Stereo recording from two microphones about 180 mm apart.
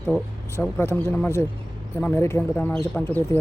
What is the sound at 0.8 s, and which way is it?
Speech, 15° left (ahead or behind).